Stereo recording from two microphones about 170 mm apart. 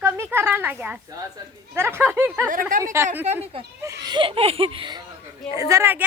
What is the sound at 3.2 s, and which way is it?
Speech, 40° right (ahead or behind).